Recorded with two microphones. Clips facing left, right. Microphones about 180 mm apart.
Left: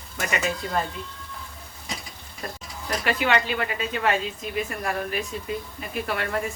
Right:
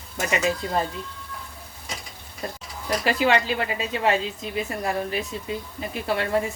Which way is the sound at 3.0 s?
30° right (ahead or behind).